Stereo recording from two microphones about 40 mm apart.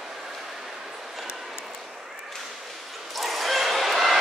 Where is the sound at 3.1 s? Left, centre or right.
Centre.